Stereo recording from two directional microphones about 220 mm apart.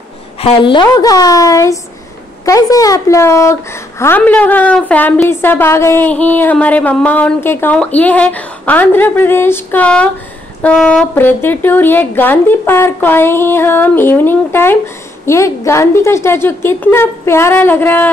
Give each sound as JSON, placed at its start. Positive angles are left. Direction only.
{"t": 0.4, "sound": "a woman's voice", "side_deg": 25}